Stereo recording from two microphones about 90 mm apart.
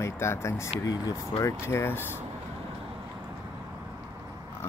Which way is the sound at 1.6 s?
25° left (ahead or behind).